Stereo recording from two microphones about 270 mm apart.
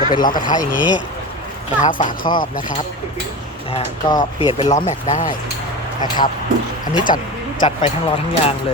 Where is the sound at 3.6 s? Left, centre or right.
Left.